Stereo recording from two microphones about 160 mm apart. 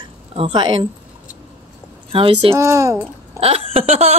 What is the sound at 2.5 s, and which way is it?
Speech, 15° right (ahead or behind).